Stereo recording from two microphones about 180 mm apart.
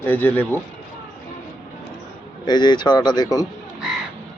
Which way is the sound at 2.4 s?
25° left (ahead or behind).